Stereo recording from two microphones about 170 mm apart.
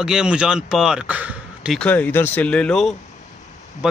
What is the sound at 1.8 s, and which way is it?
Speech, 10° left (ahead or behind).